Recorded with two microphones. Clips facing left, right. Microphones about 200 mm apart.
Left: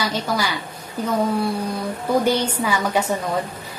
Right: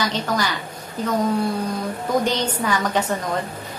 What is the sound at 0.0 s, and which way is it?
Speech, 10° left (ahead or behind).